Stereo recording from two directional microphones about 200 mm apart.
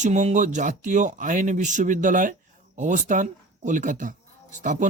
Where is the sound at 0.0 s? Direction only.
35° right (ahead or behind).